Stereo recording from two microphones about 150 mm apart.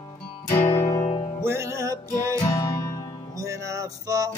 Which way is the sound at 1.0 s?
40° left (ahead or behind).